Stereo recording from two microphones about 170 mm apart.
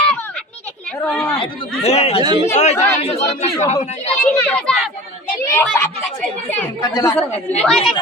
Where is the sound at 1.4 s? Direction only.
40° left (ahead or behind).